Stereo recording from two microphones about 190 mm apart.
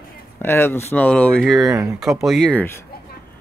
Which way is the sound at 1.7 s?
15° right (ahead or behind).